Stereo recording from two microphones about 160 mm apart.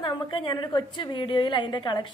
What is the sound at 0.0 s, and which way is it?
A woman's voice, 30° left (ahead or behind).